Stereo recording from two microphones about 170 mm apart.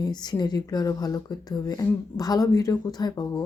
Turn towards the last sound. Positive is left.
turn(degrees=25)  # may be behind; listen again after turning